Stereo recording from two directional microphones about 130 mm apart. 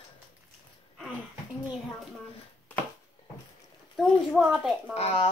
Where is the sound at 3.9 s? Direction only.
Centre (ahead or behind).